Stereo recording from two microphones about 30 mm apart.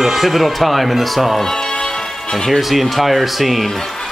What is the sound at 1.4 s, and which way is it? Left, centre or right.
Speech, centre.